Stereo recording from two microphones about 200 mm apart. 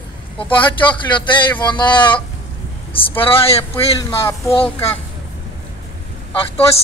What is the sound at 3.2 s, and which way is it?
Speech, 30° left (ahead or behind).